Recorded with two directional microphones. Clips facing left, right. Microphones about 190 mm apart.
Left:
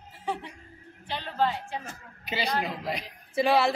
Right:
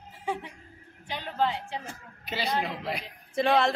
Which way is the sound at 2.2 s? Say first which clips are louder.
Even; centre (ahead or behind).